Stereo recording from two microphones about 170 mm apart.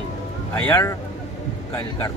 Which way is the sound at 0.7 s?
15° left (ahead or behind).